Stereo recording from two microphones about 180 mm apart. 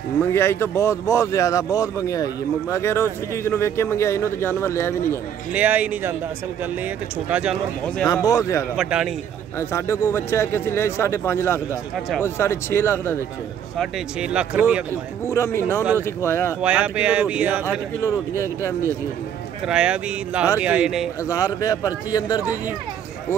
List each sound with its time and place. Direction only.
0.2 s speech: 15° left (ahead or behind)
5.5 s speech: 10° right (ahead or behind)
8.1 s speech: 20° left (ahead or behind)
8.7 s speech: centre (ahead or behind)
9.6 s speech: 15° left (ahead or behind)
13.7 s speech: 5° right (ahead or behind)
15.2 s speech: 15° left (ahead or behind)
16.6 s speech: 5° right (ahead or behind)
19.6 s speech: 5° right (ahead or behind)
21.2 s speech: 20° left (ahead or behind)